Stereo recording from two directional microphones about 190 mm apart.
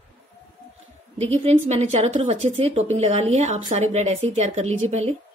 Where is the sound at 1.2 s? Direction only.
30° right (ahead or behind).